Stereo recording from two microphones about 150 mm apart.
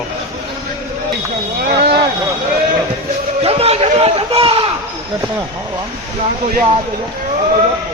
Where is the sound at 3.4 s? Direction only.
40° right (ahead or behind).